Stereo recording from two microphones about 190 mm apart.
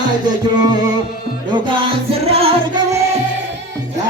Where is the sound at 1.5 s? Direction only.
30° right (ahead or behind).